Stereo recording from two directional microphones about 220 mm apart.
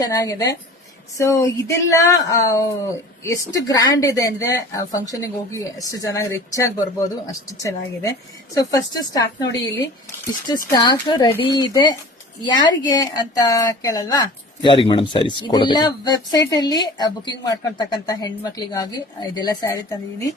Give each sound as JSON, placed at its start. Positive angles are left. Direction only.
{"t": 0.0, "sound": "speech", "side_deg": 15}
{"t": 8.5, "sound": "speech", "side_deg": 15}